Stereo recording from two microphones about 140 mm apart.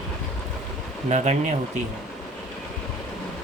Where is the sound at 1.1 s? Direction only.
55° right (ahead or behind).